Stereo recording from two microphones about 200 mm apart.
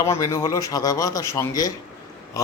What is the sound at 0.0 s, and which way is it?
A man's voice, 15° left (ahead or behind).